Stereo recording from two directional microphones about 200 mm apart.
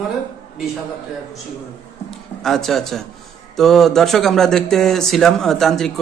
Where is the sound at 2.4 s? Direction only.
Centre (ahead or behind).